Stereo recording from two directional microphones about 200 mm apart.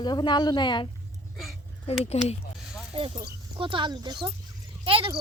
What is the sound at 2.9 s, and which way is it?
Speech, 25° right (ahead or behind).